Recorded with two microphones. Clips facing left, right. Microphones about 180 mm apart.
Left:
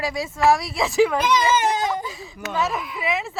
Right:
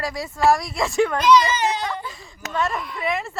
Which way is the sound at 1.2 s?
50° left (ahead or behind).